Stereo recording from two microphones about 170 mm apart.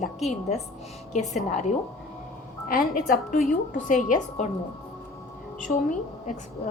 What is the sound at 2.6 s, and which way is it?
A woman's voice, 55° left (ahead or behind).